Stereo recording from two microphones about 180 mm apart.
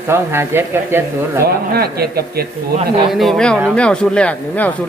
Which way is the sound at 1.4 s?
60° right (ahead or behind).